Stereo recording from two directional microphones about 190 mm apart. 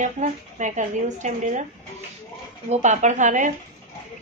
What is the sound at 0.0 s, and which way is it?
Speech, 40° right (ahead or behind).